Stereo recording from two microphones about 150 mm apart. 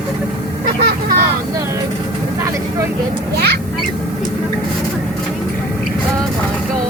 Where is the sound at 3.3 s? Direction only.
90° right.